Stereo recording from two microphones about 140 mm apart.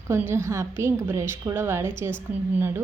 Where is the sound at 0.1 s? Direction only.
20° right (ahead or behind).